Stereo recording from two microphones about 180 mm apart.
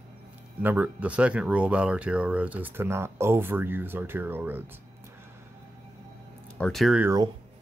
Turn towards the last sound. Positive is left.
turn(degrees=-20)  # may be behind; listen again after turning